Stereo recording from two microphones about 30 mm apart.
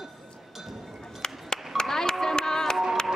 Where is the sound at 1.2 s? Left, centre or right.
Left.